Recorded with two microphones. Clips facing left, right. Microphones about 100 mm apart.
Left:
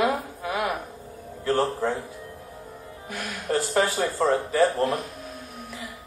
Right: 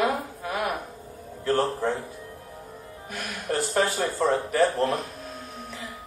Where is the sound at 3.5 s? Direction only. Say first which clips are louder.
Left 1 dB; 15° left (ahead or behind).